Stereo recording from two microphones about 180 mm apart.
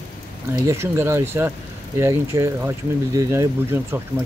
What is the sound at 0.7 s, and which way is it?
Speech, 15° right (ahead or behind).